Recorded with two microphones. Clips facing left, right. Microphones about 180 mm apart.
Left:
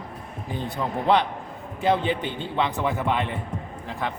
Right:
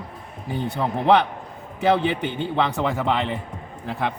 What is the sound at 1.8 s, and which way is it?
A man's voice, 80° right.